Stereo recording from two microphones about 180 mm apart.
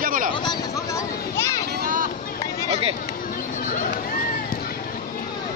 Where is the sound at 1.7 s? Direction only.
55° right (ahead or behind).